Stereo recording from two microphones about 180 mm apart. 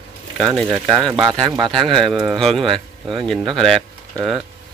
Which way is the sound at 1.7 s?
Centre (ahead or behind).